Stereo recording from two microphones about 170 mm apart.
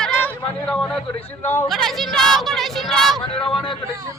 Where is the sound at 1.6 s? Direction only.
Centre (ahead or behind).